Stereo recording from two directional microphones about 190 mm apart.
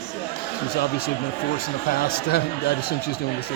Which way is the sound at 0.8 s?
55° left (ahead or behind).